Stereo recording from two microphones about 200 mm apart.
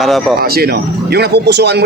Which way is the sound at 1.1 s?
55° right (ahead or behind).